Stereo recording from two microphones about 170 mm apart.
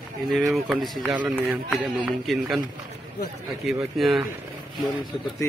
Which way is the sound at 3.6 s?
Centre (ahead or behind).